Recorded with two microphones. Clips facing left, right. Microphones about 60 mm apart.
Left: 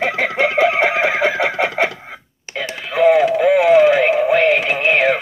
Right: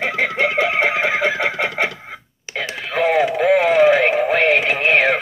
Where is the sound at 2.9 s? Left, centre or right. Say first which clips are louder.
Left 5 dB; centre.